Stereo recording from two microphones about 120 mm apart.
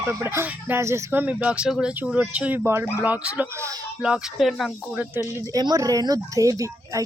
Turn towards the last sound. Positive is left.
turn(degrees=-30)  # may be behind; listen again after turning